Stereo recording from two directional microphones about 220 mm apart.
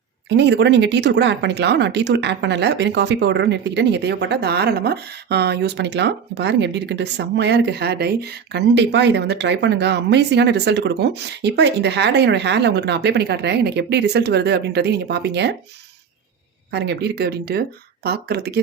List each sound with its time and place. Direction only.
0.3 s speech: 50° right (ahead or behind)
16.7 s speech: 50° right (ahead or behind)